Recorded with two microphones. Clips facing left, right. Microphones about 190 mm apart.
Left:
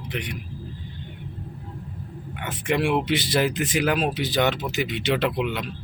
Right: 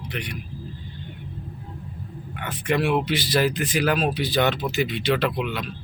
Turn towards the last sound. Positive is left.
turn(degrees=20)  # may be behind; listen again after turning